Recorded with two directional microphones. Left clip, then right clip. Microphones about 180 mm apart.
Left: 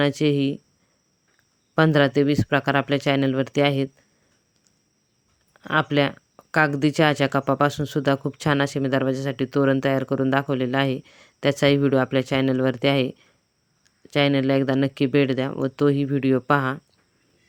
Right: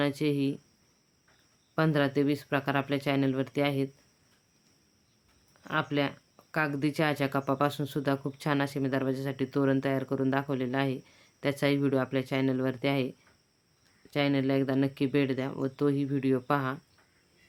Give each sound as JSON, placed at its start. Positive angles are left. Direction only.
{"t": 0.0, "sound": "speech", "side_deg": 40}
{"t": 1.7, "sound": "speech", "side_deg": 40}
{"t": 5.5, "sound": "speech", "side_deg": 40}